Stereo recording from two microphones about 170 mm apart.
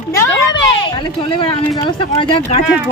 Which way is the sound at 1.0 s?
30° left (ahead or behind).